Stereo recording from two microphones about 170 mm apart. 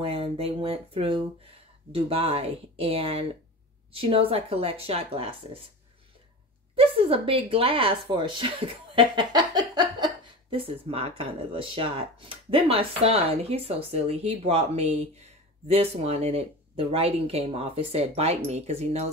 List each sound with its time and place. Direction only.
0.0 s speech: 35° right (ahead or behind)
6.7 s speech: 35° right (ahead or behind)